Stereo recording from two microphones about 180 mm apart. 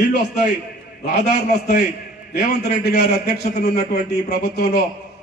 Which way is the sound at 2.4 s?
65° left (ahead or behind).